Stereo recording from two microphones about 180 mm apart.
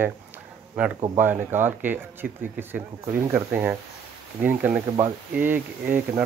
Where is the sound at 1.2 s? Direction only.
10° right (ahead or behind).